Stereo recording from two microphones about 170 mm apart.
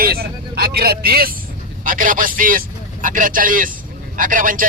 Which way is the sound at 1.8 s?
55° right (ahead or behind).